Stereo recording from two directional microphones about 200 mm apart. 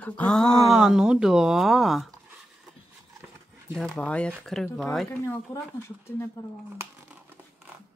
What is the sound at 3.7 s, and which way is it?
Speech, centre (ahead or behind).